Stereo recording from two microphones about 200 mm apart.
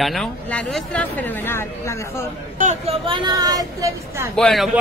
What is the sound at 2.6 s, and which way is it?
Speech, 35° right (ahead or behind).